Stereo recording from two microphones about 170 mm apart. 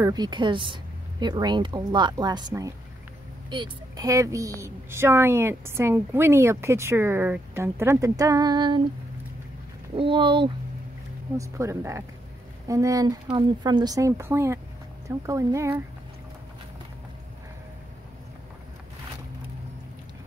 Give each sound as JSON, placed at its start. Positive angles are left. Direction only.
{"t": 0.0, "sound": "a woman's voice", "side_deg": -25}
{"t": 9.9, "sound": "speech", "side_deg": -30}
{"t": 11.3, "sound": "a woman's voice", "side_deg": -20}